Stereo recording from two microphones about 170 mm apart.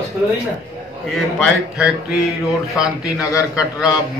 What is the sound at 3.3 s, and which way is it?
Speech, 20° left (ahead or behind).